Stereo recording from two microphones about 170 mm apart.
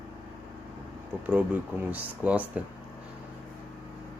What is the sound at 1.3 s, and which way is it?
Speech, 10° right (ahead or behind).